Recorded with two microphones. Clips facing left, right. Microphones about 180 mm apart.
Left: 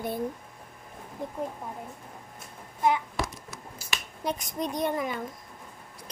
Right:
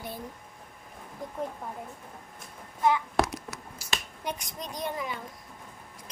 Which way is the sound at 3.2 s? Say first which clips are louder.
Right 6 dB; 70° right (ahead or behind).